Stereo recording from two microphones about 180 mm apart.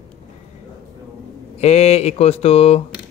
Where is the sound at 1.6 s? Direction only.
35° left (ahead or behind).